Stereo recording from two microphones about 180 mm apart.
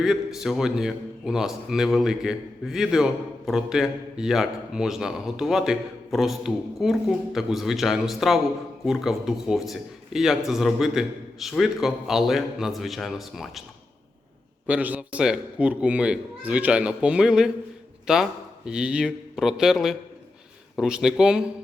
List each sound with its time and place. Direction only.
0.0 s a man's voice: centre (ahead or behind)
14.7 s a man's voice: 10° right (ahead or behind)